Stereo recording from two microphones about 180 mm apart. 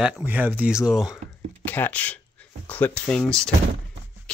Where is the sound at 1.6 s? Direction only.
10° left (ahead or behind).